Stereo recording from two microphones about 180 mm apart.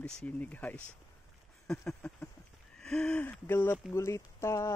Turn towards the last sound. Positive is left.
turn(degrees=15)  # may be behind; listen again after turning